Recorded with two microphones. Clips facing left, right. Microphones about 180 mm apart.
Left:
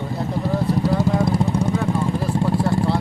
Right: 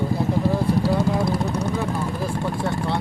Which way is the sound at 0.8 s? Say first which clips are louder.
Left 2 dB; 20° left (ahead or behind).